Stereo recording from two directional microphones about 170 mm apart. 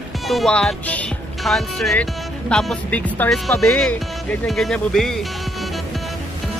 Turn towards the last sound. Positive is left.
turn(degrees=0)  # may be behind; listen again after turning